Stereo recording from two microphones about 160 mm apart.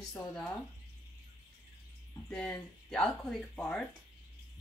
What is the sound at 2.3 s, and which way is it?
A woman's voice, 5° left (ahead or behind).